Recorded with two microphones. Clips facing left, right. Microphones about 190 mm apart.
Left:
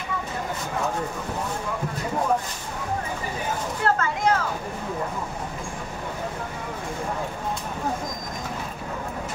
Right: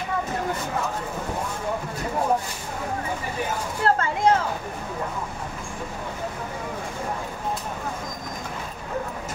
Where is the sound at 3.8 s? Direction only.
30° right (ahead or behind).